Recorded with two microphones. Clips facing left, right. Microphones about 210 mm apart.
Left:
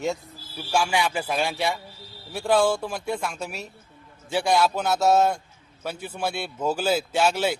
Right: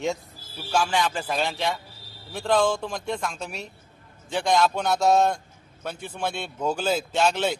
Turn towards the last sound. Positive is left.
turn(degrees=5)  # may be behind; listen again after turning